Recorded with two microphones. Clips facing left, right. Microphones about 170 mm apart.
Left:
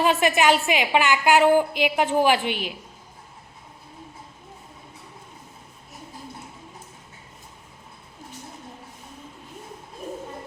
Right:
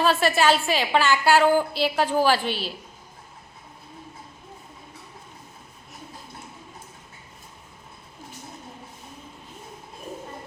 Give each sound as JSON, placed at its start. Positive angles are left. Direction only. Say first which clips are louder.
{"t": 0.0, "sound": "a woman's voice", "louder": "left 1 dB", "side_deg": 15}